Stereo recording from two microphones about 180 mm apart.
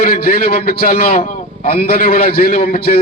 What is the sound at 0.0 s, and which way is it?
A man's voice, 55° left (ahead or behind).